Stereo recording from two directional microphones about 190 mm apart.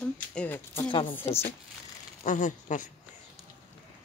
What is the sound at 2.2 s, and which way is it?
Speech, 40° left (ahead or behind).